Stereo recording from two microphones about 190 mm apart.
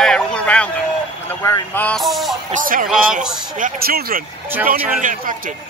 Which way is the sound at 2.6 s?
45° right (ahead or behind).